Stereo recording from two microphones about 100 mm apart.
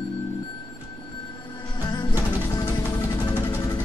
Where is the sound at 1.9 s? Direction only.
40° left (ahead or behind).